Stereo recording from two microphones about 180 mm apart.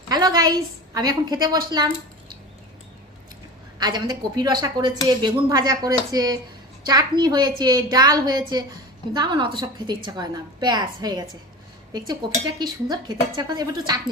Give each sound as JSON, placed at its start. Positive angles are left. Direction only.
{"t": 0.1, "sound": "a woman's voice", "side_deg": -20}
{"t": 3.8, "sound": "speech", "side_deg": -25}
{"t": 12.5, "sound": "speech", "side_deg": -25}